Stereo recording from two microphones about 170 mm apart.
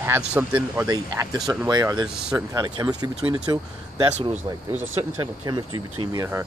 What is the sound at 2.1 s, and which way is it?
Speech, 5° right (ahead or behind).